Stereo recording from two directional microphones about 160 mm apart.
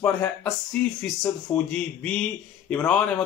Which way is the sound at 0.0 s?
10° left (ahead or behind).